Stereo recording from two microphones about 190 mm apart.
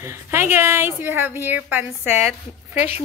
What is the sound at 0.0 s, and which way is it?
A woman's voice, 15° right (ahead or behind).